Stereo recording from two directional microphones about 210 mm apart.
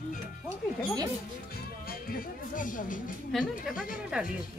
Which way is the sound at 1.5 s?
45° left (ahead or behind).